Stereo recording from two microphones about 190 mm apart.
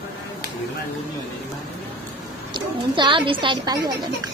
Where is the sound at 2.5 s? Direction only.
25° right (ahead or behind).